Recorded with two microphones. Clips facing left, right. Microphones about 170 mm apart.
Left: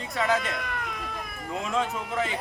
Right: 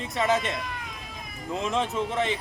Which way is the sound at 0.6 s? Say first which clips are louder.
Left 4 dB; 60° left (ahead or behind).